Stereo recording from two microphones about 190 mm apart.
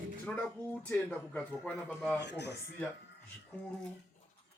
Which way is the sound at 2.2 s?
60° left (ahead or behind).